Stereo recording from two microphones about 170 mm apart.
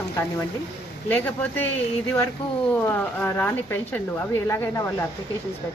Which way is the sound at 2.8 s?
10° left (ahead or behind).